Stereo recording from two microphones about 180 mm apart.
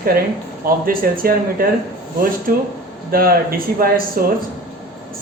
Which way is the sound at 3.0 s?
55° right (ahead or behind).